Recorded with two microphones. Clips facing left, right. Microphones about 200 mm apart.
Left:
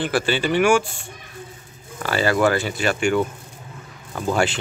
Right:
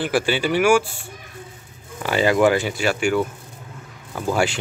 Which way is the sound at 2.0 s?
15° right (ahead or behind).